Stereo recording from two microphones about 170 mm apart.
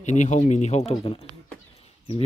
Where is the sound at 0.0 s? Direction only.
45° left (ahead or behind).